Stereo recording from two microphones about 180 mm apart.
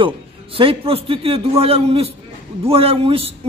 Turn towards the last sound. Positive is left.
turn(degrees=-35)  # may be behind; listen again after turning